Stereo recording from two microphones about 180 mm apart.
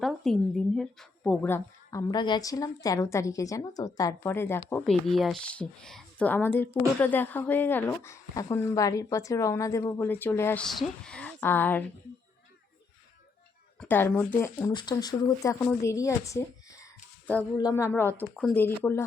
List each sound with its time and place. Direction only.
0.0 s speech: centre (ahead or behind)
4.8 s speech: centre (ahead or behind)
13.7 s speech: 10° left (ahead or behind)
14.7 s speech: 25° left (ahead or behind)
17.6 s speech: 20° left (ahead or behind)